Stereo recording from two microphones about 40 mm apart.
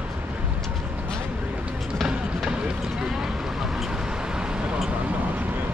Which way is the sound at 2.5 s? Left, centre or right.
Right.